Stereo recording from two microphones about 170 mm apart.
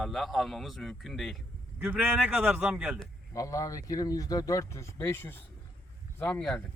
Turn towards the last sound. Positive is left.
turn(degrees=5)  # may be behind; listen again after turning